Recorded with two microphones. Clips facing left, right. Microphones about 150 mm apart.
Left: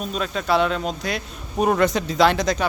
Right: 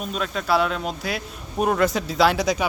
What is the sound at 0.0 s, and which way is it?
Speech, centre (ahead or behind).